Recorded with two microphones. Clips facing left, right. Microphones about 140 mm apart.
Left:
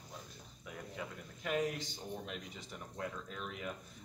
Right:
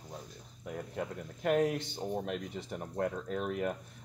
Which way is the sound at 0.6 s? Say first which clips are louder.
Right 7 dB; 45° right (ahead or behind).